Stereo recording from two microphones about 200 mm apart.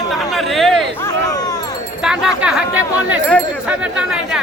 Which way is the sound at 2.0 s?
5° right (ahead or behind).